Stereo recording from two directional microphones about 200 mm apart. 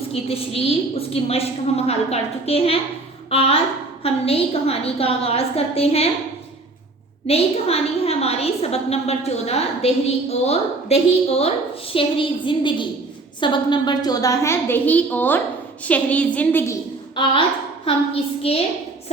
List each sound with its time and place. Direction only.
0.1 s a woman's voice: 30° left (ahead or behind)
7.3 s a woman's voice: 30° left (ahead or behind); by 16.7 s 10° left (ahead or behind)
17.2 s a woman's voice: 25° left (ahead or behind)